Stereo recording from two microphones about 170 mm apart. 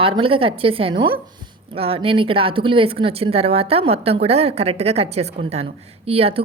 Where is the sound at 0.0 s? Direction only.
30° right (ahead or behind).